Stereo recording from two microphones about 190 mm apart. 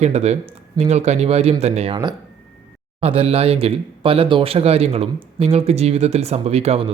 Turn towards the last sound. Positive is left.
turn(degrees=-30)  # may be behind; listen again after turning